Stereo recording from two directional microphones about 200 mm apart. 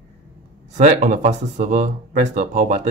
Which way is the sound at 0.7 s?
35° right (ahead or behind).